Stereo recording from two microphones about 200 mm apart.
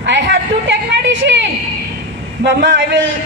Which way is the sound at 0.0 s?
60° right (ahead or behind).